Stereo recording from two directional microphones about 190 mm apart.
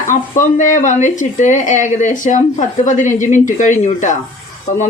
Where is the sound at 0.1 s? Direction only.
40° left (ahead or behind).